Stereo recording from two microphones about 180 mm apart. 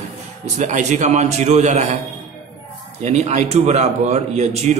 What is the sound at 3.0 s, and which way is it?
A man's voice, 40° right (ahead or behind).